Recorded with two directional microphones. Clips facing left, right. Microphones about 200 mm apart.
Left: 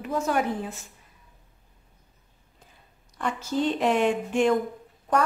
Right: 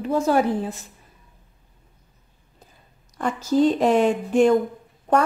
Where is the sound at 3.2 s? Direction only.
40° right (ahead or behind).